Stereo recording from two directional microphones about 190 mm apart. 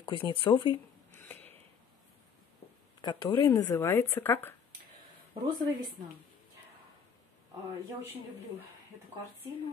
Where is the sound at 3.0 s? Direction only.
25° left (ahead or behind).